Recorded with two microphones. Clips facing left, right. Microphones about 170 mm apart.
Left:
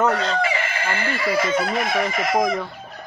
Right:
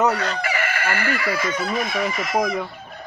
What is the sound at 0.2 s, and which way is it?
Chicken, 25° left (ahead or behind).